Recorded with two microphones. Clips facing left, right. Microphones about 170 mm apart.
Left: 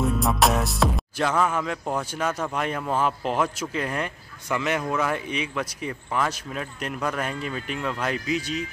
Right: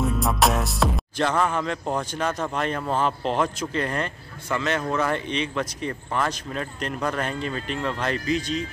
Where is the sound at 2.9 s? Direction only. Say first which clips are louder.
Even; 5° left (ahead or behind).